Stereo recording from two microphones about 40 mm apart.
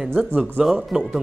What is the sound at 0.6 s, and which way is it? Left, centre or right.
Speech, centre.